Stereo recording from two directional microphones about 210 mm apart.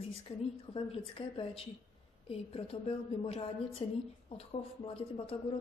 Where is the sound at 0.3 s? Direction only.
25° left (ahead or behind).